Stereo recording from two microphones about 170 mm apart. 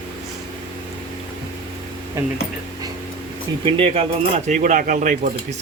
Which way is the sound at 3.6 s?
30° right (ahead or behind).